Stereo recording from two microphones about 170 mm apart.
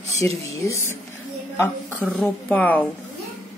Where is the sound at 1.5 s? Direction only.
15° left (ahead or behind).